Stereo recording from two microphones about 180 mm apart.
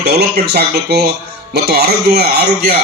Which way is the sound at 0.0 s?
65° right (ahead or behind).